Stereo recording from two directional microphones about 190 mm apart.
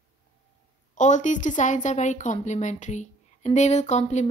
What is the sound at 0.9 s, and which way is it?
A woman's voice, 40° left (ahead or behind).